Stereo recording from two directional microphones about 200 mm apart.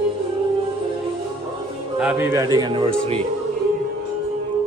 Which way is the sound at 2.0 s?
10° right (ahead or behind).